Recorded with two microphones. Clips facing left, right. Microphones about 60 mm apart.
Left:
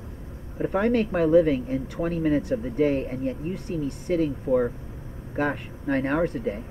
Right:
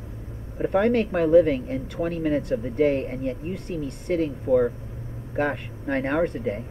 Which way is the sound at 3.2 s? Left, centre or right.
Right.